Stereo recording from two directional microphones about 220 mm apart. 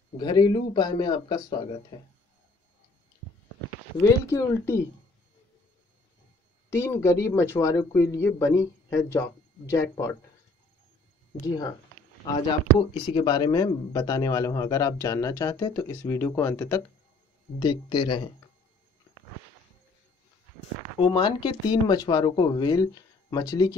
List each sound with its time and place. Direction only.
0.2 s speech: 20° left (ahead or behind)
4.0 s speech: 10° left (ahead or behind)
6.7 s speech: 10° left (ahead or behind)
11.4 s speech: 15° left (ahead or behind)
12.9 s speech: 20° left (ahead or behind)
21.1 s speech: 20° left (ahead or behind)